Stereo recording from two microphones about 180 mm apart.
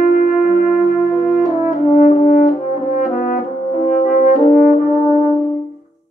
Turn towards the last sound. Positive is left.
turn(degrees=45)  # may be behind; listen again after turning